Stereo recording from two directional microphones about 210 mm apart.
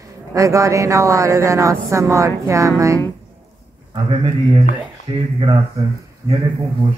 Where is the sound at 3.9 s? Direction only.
25° right (ahead or behind).